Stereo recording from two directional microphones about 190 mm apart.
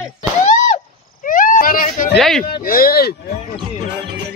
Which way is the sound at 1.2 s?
45° left (ahead or behind).